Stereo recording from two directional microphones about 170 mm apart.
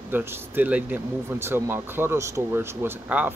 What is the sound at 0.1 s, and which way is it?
Speech, 10° right (ahead or behind).